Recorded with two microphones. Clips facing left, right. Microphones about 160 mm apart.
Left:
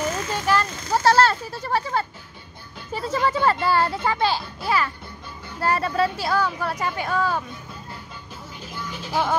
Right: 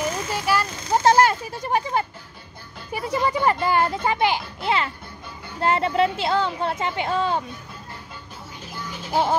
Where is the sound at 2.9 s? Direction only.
15° right (ahead or behind).